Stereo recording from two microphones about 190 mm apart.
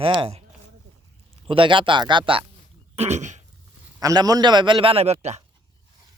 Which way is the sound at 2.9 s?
35° right (ahead or behind).